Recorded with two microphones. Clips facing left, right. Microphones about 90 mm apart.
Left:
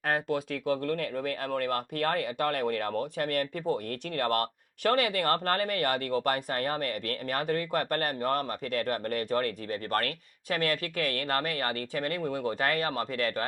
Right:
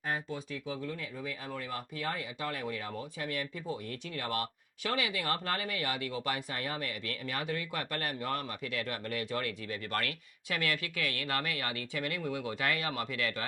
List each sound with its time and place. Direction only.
0.0 s speech: 65° left (ahead or behind); by 13.4 s 40° left (ahead or behind)